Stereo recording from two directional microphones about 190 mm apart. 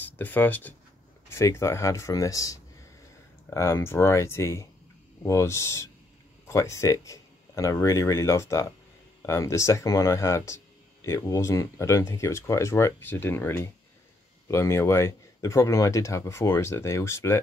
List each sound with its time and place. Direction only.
0.2 s speech: 10° left (ahead or behind)